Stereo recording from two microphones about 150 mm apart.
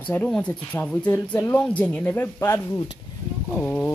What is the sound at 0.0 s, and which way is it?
Speech, 10° left (ahead or behind).